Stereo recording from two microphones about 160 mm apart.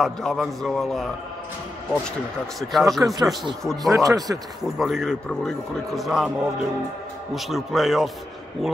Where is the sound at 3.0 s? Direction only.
15° right (ahead or behind).